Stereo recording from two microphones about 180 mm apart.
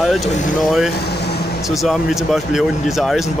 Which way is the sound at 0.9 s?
65° left (ahead or behind).